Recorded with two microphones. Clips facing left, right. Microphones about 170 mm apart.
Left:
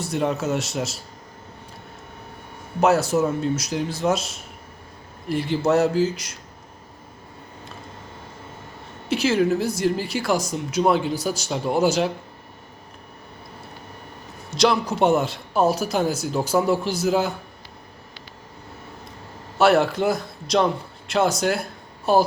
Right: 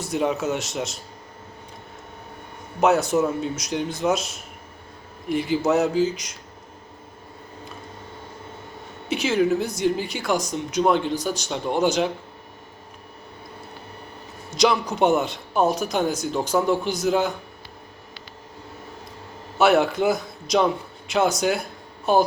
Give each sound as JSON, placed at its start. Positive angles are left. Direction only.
{"t": 0.0, "sound": "speech", "side_deg": 0}
{"t": 2.8, "sound": "speech", "side_deg": 0}
{"t": 9.0, "sound": "speech", "side_deg": 0}
{"t": 14.5, "sound": "speech", "side_deg": 0}
{"t": 19.5, "sound": "a man's voice", "side_deg": 0}